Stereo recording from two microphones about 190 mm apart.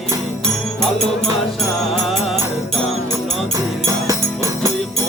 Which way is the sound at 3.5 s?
15° right (ahead or behind).